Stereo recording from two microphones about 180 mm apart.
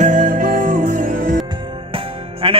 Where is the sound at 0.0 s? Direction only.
45° right (ahead or behind).